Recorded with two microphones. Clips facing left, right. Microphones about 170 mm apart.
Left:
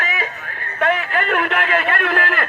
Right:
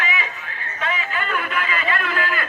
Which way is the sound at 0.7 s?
60° left (ahead or behind).